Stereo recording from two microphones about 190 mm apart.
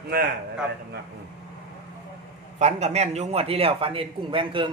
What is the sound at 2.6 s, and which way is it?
A man's voice, 35° right (ahead or behind).